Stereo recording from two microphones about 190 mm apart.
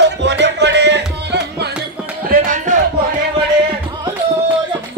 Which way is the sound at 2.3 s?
40° right (ahead or behind).